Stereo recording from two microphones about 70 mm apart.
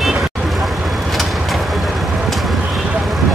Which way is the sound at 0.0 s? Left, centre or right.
Centre.